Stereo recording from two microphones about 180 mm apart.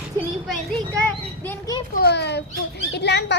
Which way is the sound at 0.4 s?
Centre (ahead or behind).